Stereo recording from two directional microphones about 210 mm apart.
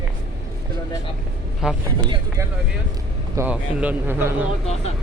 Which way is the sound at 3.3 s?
5° right (ahead or behind).